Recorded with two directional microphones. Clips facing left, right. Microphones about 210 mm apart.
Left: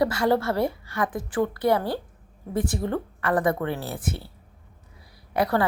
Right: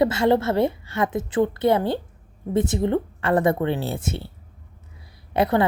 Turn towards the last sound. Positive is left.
turn(degrees=-25)  # may be behind; listen again after turning